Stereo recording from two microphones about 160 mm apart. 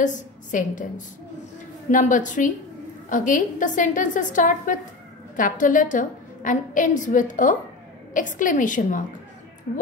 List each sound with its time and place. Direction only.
0.0 s a woman's voice: 50° left (ahead or behind)